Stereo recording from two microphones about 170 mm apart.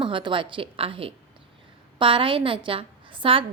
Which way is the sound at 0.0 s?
30° right (ahead or behind).